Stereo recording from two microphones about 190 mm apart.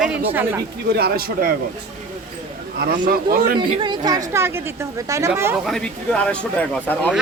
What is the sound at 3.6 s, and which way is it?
A woman's voice, 25° right (ahead or behind).